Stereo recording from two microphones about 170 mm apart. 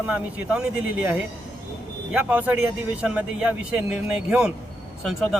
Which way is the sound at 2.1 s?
10° right (ahead or behind).